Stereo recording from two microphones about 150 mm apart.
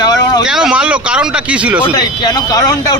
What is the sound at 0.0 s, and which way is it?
Vehicle, 25° left (ahead or behind).